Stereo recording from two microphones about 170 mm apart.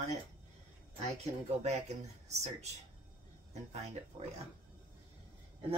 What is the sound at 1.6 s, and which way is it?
Speech, 40° right (ahead or behind).